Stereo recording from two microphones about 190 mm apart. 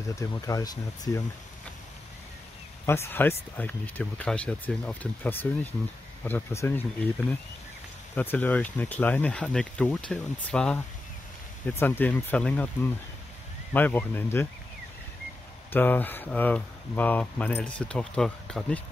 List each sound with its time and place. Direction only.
0.1 s speech: 15° left (ahead or behind)
2.8 s speech: 10° left (ahead or behind)
8.2 s speech: 10° left (ahead or behind)
13.7 s speech: 10° left (ahead or behind)
15.7 s speech: 10° left (ahead or behind)